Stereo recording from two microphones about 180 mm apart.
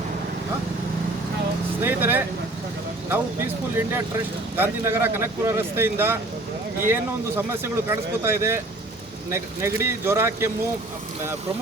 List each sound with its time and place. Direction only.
1.8 s vehicle: 10° right (ahead or behind)
3.1 s speech: 10° right (ahead or behind)